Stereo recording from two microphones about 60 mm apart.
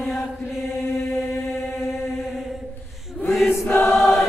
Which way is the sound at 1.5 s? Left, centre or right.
Centre.